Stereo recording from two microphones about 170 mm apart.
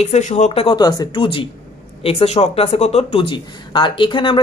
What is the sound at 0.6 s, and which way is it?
Speech, 25° left (ahead or behind).